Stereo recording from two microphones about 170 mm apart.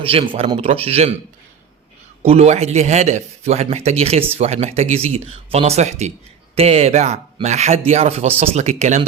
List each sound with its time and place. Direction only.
0.0 s speech: 35° right (ahead or behind)
2.2 s speech: 40° right (ahead or behind)